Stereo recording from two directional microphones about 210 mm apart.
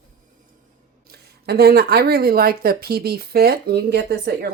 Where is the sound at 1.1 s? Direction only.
50° right (ahead or behind).